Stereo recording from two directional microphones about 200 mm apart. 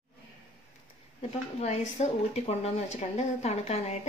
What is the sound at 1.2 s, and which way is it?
Speech, 30° left (ahead or behind).